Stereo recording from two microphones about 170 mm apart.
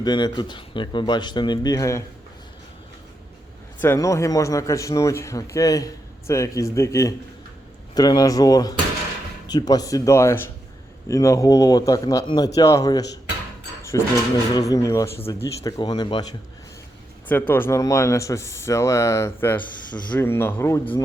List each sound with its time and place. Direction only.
0.0 s speech: 25° left (ahead or behind)
3.8 s speech: 15° left (ahead or behind)
17.2 s speech: 10° left (ahead or behind)